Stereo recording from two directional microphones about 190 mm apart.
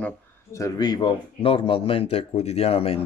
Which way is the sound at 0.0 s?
15° left (ahead or behind).